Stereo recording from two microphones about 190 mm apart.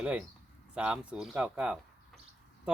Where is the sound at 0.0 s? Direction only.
5° right (ahead or behind).